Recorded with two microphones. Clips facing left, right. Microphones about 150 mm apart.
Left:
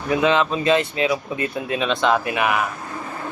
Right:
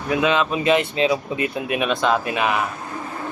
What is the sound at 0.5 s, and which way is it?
Speech, 15° right (ahead or behind).